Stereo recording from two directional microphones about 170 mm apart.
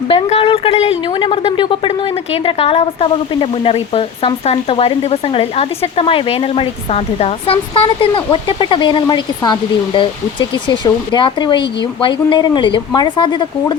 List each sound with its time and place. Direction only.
0.1 s speech: 35° left (ahead or behind)